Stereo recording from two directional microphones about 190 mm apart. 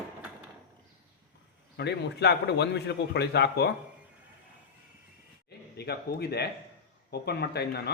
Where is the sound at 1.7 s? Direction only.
60° left (ahead or behind).